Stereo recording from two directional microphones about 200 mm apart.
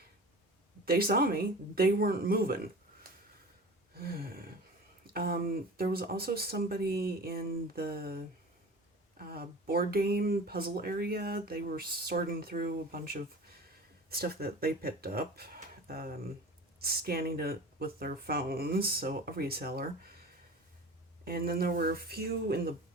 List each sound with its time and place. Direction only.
0.9 s speech: 50° right (ahead or behind)
3.9 s a sound: 50° right (ahead or behind)
5.1 s speech: 50° right (ahead or behind)
21.2 s speech: 50° right (ahead or behind)